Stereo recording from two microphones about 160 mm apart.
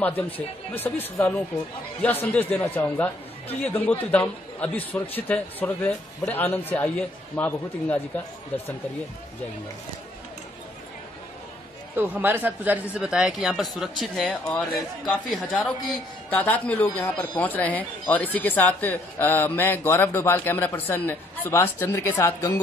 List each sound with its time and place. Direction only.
0.7 s speech: 10° left (ahead or behind)
11.9 s speech: 10° right (ahead or behind); by 22.5 s 20° left (ahead or behind)